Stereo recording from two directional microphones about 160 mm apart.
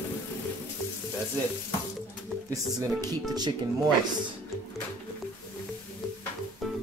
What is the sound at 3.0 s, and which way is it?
Speech, 25° right (ahead or behind).